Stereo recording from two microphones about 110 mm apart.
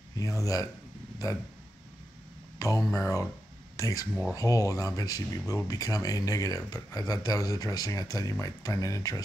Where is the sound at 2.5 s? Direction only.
30° left (ahead or behind).